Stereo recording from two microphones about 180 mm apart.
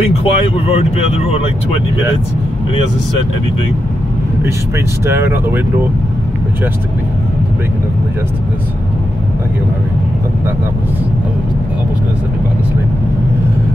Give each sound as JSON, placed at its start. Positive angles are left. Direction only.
{"t": 0.0, "sound": "speech", "side_deg": 35}
{"t": 5.0, "sound": "speech", "side_deg": -15}